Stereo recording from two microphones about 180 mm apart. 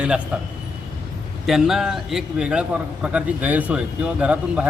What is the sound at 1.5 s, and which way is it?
A man's voice, centre (ahead or behind).